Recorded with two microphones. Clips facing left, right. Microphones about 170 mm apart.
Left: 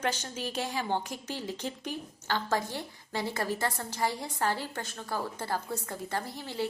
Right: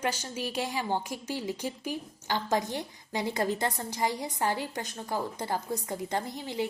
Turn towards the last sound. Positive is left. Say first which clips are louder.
# right 3 dB
turn(degrees=-15)  # may be behind; listen again after turning